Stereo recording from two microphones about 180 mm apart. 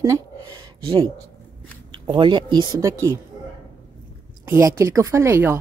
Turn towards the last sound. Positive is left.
turn(degrees=-15)  # may be behind; listen again after turning